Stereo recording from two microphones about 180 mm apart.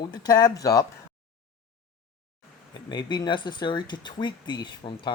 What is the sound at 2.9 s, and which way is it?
Speech, 25° left (ahead or behind).